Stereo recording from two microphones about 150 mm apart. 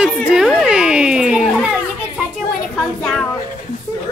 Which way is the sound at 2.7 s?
5° left (ahead or behind).